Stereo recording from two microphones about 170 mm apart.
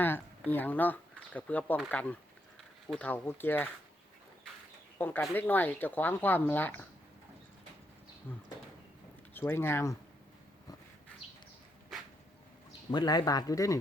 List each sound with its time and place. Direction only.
0.0 s speech: 10° left (ahead or behind)
4.9 s speech: 10° left (ahead or behind)
8.3 s speech: 10° left (ahead or behind)
12.9 s speech: 25° left (ahead or behind)